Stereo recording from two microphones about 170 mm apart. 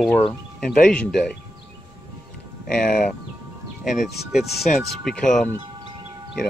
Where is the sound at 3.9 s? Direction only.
Centre (ahead or behind).